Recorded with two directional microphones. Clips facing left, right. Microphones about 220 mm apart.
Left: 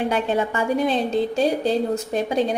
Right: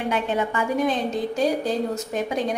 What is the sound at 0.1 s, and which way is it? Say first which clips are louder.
Speech: left 2 dB; 30° left (ahead or behind).